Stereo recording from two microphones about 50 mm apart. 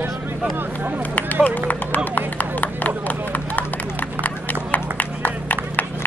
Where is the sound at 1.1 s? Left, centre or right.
Left.